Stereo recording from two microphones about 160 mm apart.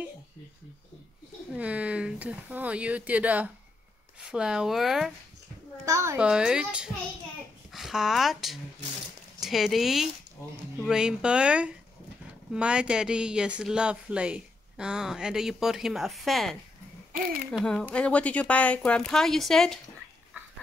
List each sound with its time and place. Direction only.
1.5 s speech: 10° right (ahead or behind)
5.9 s a woman's voice: 20° right (ahead or behind)
6.1 s speech: 5° right (ahead or behind)